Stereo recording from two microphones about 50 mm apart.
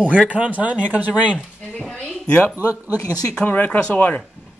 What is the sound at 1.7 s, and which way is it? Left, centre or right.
Music, centre.